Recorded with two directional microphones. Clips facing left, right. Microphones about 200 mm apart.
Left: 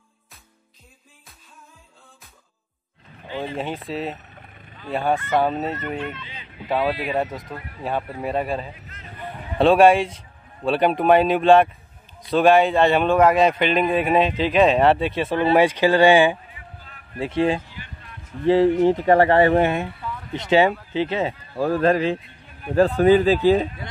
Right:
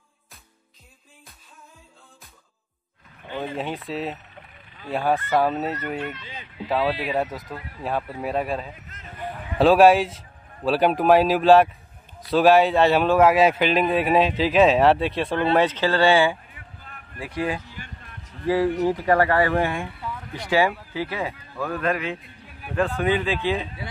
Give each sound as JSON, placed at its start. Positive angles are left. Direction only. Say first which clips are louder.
{"t": 3.5, "sound": "a man's voice", "louder": "left 1 dB", "side_deg": 0}
{"t": 16.5, "sound": "a sound", "louder": "left 1 dB", "side_deg": -50}
{"t": 17.2, "sound": "speech", "louder": "left 6 dB", "side_deg": 25}
{"t": 17.6, "sound": "music", "louder": "even", "side_deg": -45}
{"t": 18.4, "sound": "speech", "louder": "left 5 dB", "side_deg": 25}